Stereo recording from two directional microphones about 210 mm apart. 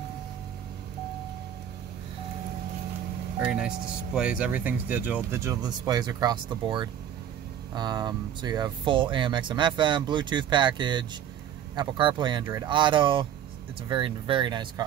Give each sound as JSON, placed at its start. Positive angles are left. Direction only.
{"t": 3.3, "sound": "speech", "side_deg": -5}